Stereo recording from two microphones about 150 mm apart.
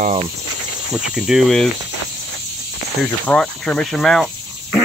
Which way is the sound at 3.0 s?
10° left (ahead or behind).